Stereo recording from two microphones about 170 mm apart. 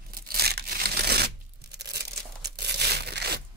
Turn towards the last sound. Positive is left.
turn(degrees=-75)  # may be behind; listen again after turning